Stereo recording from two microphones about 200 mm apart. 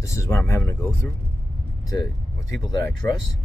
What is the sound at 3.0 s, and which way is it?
Speech, 10° left (ahead or behind).